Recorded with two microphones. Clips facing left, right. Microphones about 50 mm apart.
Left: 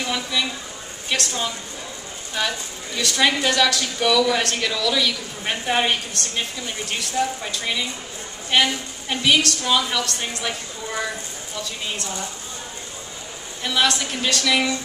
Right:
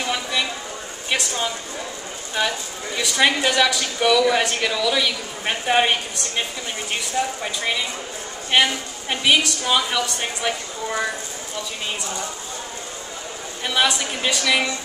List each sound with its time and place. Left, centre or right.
0.0 s a woman's voice: centre
13.7 s a woman's voice: centre